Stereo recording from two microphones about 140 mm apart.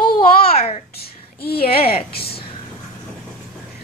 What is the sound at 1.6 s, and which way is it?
Speech, 45° left (ahead or behind).